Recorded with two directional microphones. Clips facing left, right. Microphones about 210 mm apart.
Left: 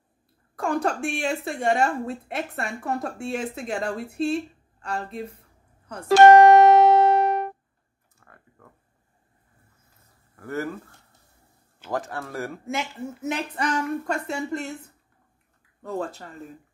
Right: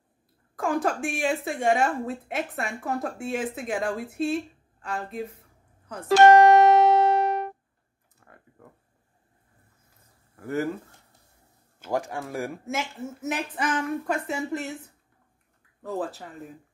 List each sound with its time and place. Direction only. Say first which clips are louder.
0.6 s a woman's voice: left 1 dB; centre (ahead or behind)
4.8 s a sound: left 1 dB; centre (ahead or behind)
6.2 s music: left 3 dB; 50° left (ahead or behind)
8.3 s a sound: right 2 dB; 20° right (ahead or behind)
10.4 s speech: right 2 dB; 15° right (ahead or behind)
11.9 s speech: right 1 dB; 15° right (ahead or behind)
12.6 s a woman's voice: left 1 dB; centre (ahead or behind)
15.8 s a woman's voice: even; centre (ahead or behind)